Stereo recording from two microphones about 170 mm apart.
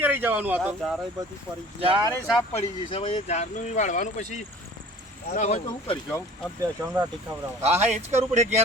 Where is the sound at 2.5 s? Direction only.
40° left (ahead or behind).